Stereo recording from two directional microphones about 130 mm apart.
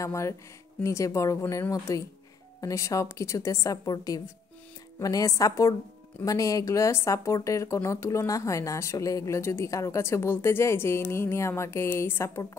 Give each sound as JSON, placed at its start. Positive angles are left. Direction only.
{"t": 0.0, "sound": "speech", "side_deg": 20}